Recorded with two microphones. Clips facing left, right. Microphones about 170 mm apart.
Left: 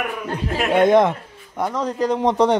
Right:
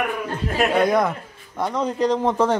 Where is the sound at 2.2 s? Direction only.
15° left (ahead or behind).